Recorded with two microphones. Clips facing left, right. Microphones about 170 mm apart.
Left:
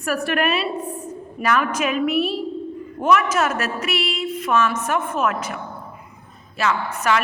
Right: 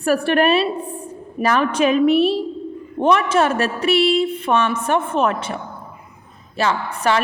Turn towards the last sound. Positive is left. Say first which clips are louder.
# right 2 dB
turn(degrees=-30)  # may be behind; listen again after turning